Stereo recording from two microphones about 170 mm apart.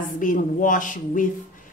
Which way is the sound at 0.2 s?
50° left (ahead or behind).